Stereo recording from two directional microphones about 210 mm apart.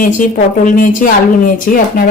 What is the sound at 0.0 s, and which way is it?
A woman's voice, 40° left (ahead or behind).